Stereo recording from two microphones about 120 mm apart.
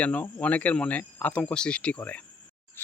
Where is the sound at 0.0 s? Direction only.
10° left (ahead or behind).